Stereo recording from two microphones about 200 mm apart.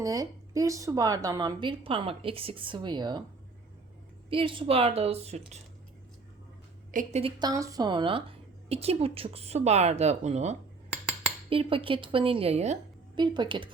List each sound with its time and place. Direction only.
0.0 s speech: 15° right (ahead or behind)
4.3 s speech: 25° right (ahead or behind)
6.9 s speech: 30° right (ahead or behind)
13.1 s speech: 20° right (ahead or behind)